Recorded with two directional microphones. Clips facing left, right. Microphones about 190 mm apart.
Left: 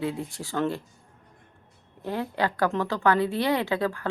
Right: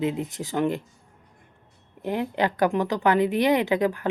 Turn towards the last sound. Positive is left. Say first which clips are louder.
# right 4 dB
turn(degrees=-20)  # may be behind; listen again after turning